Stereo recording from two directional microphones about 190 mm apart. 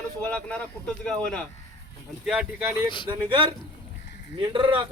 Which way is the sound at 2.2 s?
5° right (ahead or behind).